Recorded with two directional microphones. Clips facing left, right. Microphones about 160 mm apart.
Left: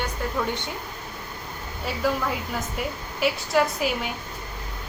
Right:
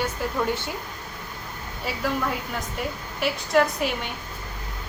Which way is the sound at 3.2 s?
Centre (ahead or behind).